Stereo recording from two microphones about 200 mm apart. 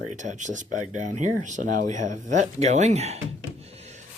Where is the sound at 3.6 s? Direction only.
30° right (ahead or behind).